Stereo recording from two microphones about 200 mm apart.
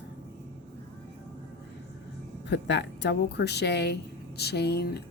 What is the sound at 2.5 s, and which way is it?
Speech, 60° left (ahead or behind).